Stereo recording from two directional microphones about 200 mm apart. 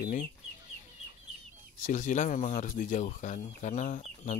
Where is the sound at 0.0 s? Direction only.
45° left (ahead or behind).